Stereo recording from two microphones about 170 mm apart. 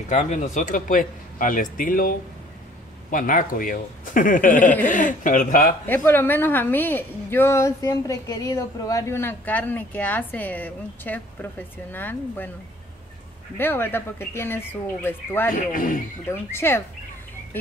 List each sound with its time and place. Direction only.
0.1 s speech: 45° left (ahead or behind)
5.9 s a woman's voice: 15° left (ahead or behind)
13.6 s a woman's voice: 10° left (ahead or behind)
15.5 s speech: 55° left (ahead or behind)
16.3 s a woman's voice: 15° left (ahead or behind)